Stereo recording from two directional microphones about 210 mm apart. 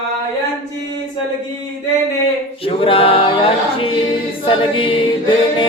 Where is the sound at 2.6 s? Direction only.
25° left (ahead or behind).